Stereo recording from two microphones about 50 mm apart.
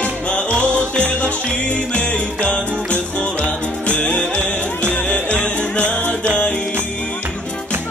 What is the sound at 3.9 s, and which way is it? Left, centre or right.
Music, left.